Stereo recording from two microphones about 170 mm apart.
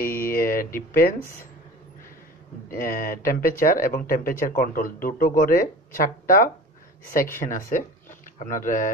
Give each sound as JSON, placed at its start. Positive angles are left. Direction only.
{"t": 0.0, "sound": "a sound", "side_deg": 55}
{"t": 0.7, "sound": "speech", "side_deg": 60}
{"t": 2.7, "sound": "speech", "side_deg": 60}